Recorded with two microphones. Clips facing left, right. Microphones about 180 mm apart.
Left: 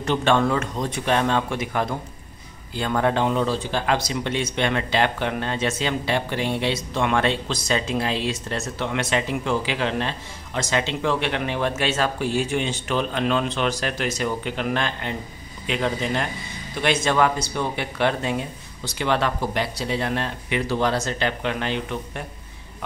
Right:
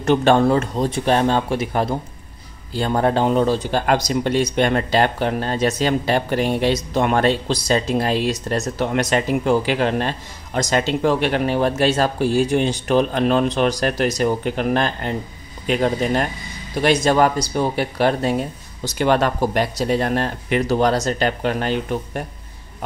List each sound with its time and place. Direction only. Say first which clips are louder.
0.0 s speech: right 5 dB; 40° right (ahead or behind)